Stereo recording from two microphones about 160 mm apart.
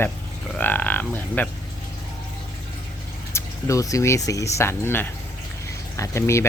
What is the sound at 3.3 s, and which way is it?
Speech, 20° left (ahead or behind).